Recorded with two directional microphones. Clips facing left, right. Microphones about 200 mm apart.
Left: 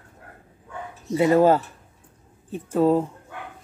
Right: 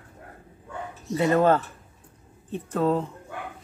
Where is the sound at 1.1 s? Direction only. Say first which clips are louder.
Left 3 dB; 10° left (ahead or behind).